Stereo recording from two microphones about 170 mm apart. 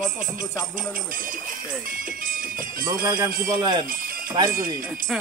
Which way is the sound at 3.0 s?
25° right (ahead or behind).